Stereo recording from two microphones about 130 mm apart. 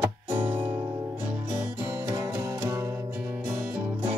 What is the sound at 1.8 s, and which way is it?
Music, 25° right (ahead or behind).